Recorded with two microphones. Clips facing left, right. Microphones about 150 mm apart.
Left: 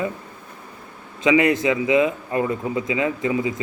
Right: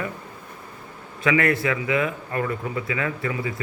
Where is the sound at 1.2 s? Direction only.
15° left (ahead or behind).